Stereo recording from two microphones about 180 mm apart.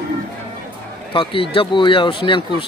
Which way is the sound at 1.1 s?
30° left (ahead or behind).